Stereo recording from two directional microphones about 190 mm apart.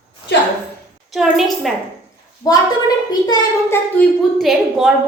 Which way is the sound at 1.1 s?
Centre (ahead or behind).